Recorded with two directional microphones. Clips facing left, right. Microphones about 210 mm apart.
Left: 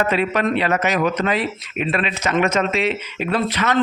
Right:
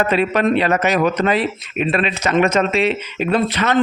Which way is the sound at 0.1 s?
35° right (ahead or behind).